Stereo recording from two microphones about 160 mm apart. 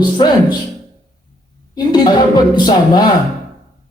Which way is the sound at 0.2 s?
30° left (ahead or behind).